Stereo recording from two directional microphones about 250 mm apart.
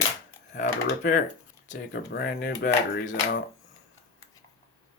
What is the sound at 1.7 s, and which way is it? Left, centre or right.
Speech, left.